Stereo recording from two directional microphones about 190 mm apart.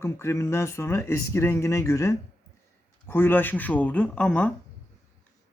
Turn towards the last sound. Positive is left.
turn(degrees=5)  # may be behind; listen again after turning